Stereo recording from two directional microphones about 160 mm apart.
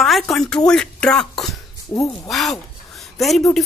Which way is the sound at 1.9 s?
20° left (ahead or behind).